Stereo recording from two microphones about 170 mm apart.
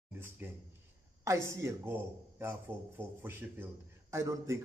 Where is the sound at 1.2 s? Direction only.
15° right (ahead or behind).